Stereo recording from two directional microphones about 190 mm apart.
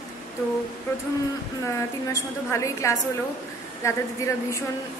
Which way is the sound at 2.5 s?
15° left (ahead or behind).